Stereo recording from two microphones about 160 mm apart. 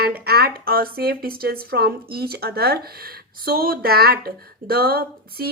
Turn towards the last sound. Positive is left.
turn(degrees=-75)  # may be behind; listen again after turning